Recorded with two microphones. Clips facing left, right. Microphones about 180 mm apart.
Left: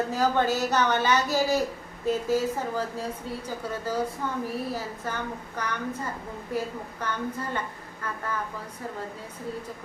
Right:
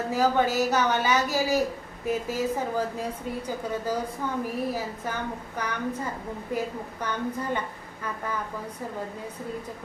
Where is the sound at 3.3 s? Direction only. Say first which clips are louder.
Right 2 dB; 15° right (ahead or behind).